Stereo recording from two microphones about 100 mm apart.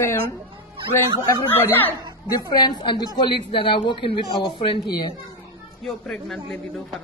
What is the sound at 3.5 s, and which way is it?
Speech, 60° left (ahead or behind).